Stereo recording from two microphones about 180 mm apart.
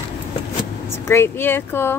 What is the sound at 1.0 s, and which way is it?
Speech, 15° left (ahead or behind).